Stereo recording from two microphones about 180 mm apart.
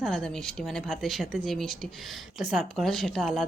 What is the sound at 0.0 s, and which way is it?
Speech, 5° left (ahead or behind).